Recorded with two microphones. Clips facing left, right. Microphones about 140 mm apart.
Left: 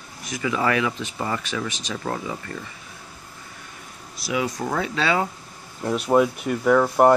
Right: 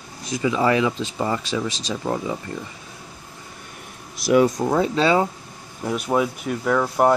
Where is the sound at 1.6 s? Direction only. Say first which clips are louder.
Right 3 dB; 35° right (ahead or behind).